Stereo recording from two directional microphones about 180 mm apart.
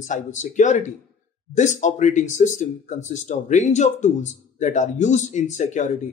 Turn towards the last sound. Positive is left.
turn(degrees=40)  # may be behind; listen again after turning